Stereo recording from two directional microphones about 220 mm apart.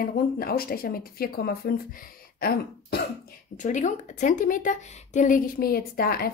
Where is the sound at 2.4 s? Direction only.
45° left (ahead or behind).